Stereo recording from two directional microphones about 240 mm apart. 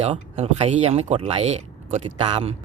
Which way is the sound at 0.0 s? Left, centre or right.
Right.